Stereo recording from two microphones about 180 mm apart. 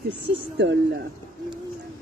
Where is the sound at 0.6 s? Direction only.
80° right.